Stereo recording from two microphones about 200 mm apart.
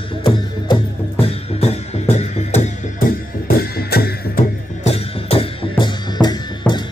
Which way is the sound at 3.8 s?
50° left (ahead or behind).